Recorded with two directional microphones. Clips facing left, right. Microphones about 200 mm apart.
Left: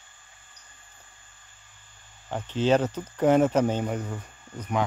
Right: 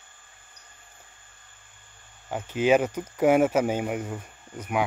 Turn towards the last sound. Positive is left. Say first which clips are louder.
# even
turn(degrees=-10)  # may be behind; listen again after turning